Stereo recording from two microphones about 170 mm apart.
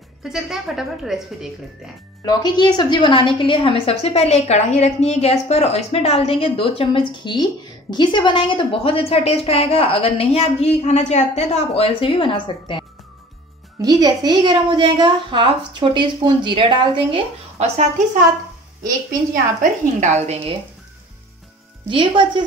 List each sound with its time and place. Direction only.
0.2 s a woman's voice: centre (ahead or behind)
2.2 s a woman's voice: 25° left (ahead or behind)
13.7 s a woman's voice: 20° right (ahead or behind)
17.6 s a woman's voice: 45° right (ahead or behind)
19.3 s a woman's voice: 50° right (ahead or behind)
21.8 s a woman's voice: 30° right (ahead or behind)